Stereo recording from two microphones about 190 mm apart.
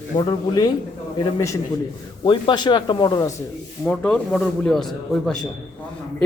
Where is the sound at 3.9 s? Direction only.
5° left (ahead or behind).